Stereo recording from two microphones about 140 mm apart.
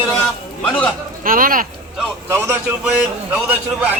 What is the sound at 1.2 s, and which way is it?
Speech, 85° right.